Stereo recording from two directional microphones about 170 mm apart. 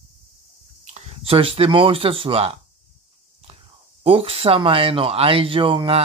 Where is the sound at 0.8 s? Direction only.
40° right (ahead or behind).